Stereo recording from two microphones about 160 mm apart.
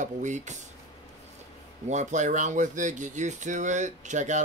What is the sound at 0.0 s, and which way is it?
Speech, 50° right (ahead or behind).